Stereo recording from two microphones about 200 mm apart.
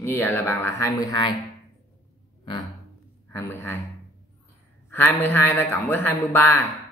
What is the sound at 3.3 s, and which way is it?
Speech, 10° left (ahead or behind).